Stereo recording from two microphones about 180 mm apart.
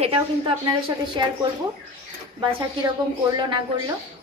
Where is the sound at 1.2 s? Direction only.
25° right (ahead or behind).